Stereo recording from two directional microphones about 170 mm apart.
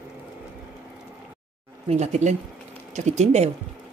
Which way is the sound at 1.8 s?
40° right (ahead or behind).